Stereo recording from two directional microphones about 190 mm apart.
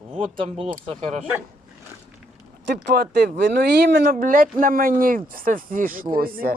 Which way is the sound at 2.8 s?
55° right (ahead or behind).